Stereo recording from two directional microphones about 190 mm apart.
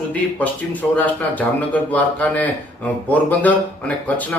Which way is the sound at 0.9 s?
10° left (ahead or behind).